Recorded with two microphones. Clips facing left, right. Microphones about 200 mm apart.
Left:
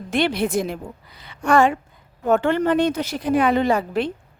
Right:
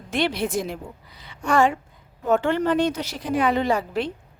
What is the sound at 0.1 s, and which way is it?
A woman's voice, 55° left (ahead or behind).